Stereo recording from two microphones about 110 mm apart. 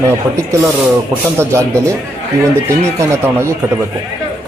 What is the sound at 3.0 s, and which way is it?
Speech, 25° right (ahead or behind).